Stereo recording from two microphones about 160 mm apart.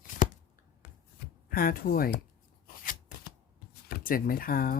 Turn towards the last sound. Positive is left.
turn(degrees=65)  # may be behind; listen again after turning